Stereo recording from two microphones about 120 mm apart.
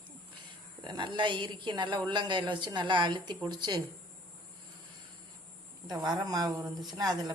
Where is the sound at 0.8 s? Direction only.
40° right (ahead or behind).